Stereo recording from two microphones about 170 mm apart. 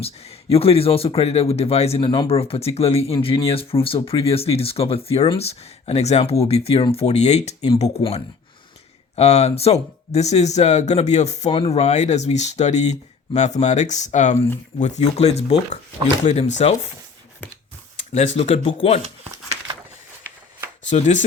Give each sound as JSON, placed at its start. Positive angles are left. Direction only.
{"t": 0.5, "sound": "speech", "side_deg": 35}
{"t": 18.3, "sound": "speech", "side_deg": 35}
{"t": 20.9, "sound": "speech", "side_deg": 45}